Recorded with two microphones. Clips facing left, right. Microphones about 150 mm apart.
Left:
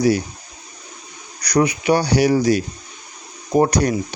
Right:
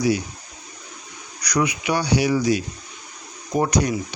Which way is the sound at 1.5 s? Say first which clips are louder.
Left 5 dB; 35° left (ahead or behind).